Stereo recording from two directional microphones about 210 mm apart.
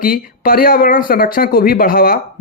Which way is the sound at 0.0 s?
45° left (ahead or behind).